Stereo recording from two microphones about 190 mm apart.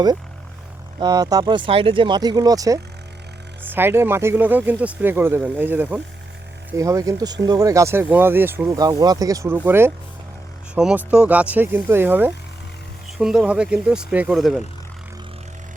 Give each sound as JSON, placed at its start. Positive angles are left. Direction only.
{"t": 0.9, "sound": "speech", "side_deg": -20}